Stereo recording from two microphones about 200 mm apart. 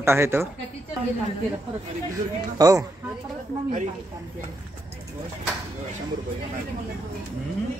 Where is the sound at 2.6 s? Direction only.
15° right (ahead or behind).